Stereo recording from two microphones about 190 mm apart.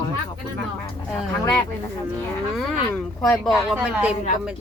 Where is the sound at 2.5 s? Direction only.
Centre (ahead or behind).